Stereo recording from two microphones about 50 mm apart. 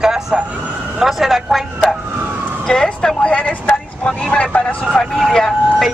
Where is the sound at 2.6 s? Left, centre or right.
Centre.